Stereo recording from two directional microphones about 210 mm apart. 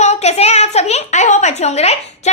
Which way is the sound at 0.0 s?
30° left (ahead or behind).